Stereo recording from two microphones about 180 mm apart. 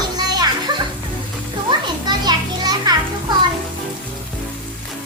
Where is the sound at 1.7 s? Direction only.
25° right (ahead or behind).